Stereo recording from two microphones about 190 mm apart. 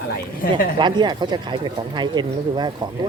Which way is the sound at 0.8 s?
25° right (ahead or behind).